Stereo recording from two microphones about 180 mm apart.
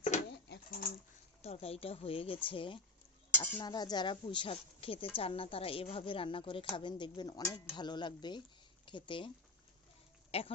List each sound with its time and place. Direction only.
0.4 s pigeon: 70° left (ahead or behind)
1.4 s speech: 35° left (ahead or behind)
3.3 s speech: 10° left (ahead or behind)
3.6 s a woman's voice: 25° left (ahead or behind)
10.3 s speech: 30° left (ahead or behind)